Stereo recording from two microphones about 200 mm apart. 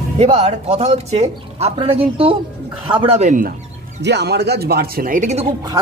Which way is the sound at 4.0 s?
60° right (ahead or behind).